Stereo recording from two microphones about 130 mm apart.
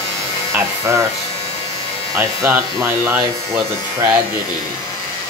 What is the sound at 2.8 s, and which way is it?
Speech, 25° right (ahead or behind).